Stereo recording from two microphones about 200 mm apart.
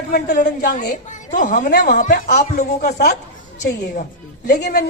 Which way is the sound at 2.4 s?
40° left (ahead or behind).